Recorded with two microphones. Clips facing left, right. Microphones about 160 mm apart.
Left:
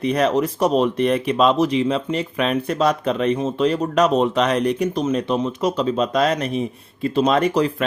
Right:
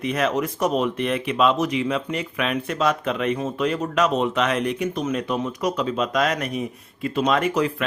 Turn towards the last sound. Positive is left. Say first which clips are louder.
# left 3 dB
turn(degrees=35)  # may be behind; listen again after turning